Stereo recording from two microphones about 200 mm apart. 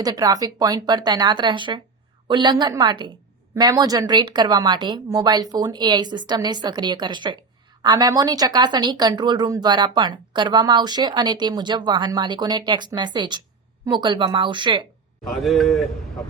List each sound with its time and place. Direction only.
0.0 s speech: 20° right (ahead or behind)
15.3 s a man's voice: centre (ahead or behind)